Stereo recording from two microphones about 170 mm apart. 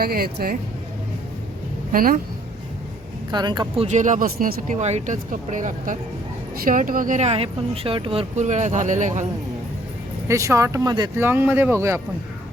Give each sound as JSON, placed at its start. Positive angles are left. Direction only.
{"t": 0.0, "sound": "speech", "side_deg": -65}
{"t": 1.9, "sound": "speech", "side_deg": -55}
{"t": 3.3, "sound": "speech", "side_deg": -25}
{"t": 3.8, "sound": "speech", "side_deg": -45}
{"t": 4.8, "sound": "speech", "side_deg": -40}
{"t": 10.2, "sound": "speech", "side_deg": -15}